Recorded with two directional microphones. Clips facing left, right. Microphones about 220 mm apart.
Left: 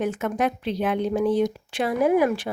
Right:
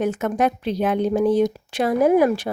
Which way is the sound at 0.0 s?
40° right (ahead or behind).